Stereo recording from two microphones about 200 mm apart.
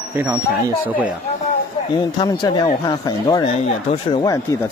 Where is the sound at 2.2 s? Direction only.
20° left (ahead or behind).